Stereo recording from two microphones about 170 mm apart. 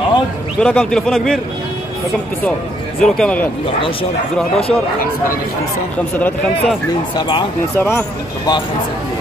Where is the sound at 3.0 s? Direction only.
5° left (ahead or behind).